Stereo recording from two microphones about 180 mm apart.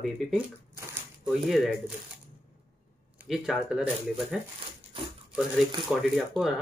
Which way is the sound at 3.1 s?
5° right (ahead or behind).